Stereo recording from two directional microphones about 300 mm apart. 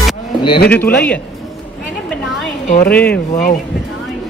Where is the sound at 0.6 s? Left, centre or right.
Centre.